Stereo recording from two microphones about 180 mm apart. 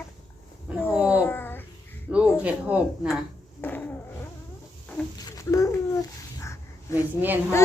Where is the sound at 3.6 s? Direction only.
10° left (ahead or behind).